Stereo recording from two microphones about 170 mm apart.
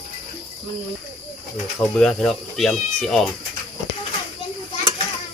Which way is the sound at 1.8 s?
5° left (ahead or behind).